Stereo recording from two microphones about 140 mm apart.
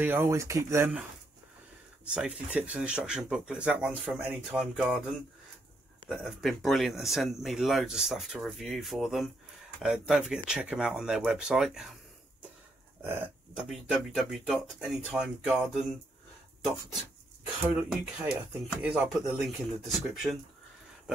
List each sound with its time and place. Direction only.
0.0 s speech: 15° right (ahead or behind)
2.0 s speech: 10° right (ahead or behind)
13.0 s speech: 10° right (ahead or behind)
18.2 s speech: 10° right (ahead or behind)